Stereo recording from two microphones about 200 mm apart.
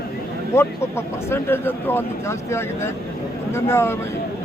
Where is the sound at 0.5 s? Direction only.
10° left (ahead or behind).